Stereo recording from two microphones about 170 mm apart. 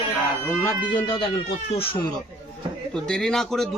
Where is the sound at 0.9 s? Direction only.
30° left (ahead or behind).